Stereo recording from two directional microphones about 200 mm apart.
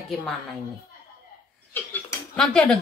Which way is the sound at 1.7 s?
10° left (ahead or behind).